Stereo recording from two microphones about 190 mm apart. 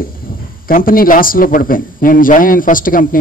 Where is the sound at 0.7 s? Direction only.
50° left (ahead or behind).